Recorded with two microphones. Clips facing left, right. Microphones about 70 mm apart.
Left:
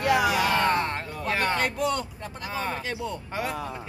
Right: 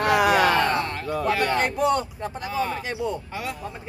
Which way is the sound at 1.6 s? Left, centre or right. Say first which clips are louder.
Right 4 dB; right.